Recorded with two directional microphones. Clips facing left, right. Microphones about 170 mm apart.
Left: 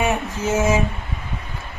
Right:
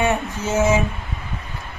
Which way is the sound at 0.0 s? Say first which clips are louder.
Even; 10° left (ahead or behind).